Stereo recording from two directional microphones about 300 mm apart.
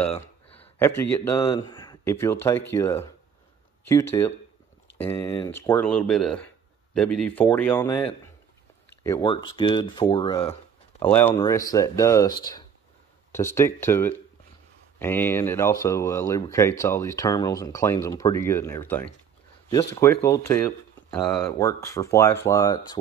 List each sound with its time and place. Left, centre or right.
0.0 s speech: centre
9.0 s speech: centre
11.0 s speech: centre